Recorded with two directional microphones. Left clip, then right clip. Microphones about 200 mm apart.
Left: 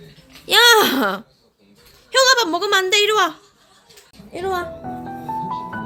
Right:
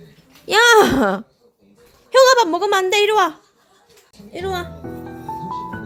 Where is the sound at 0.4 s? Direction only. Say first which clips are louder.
Right 1 dB; 25° right (ahead or behind).